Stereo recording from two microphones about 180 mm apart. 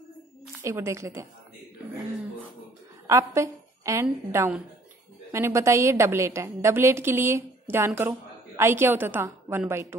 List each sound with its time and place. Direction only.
0.7 s a woman's voice: 15° right (ahead or behind)
3.1 s a woman's voice: 15° right (ahead or behind)